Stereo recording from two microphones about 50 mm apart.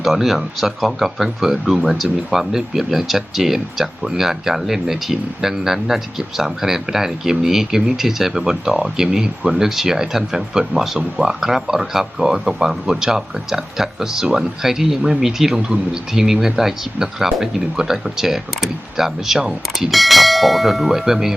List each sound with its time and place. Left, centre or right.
0.0 s speech: centre